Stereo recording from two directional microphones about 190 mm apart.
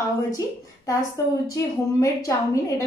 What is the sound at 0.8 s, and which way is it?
A woman's voice, 15° left (ahead or behind).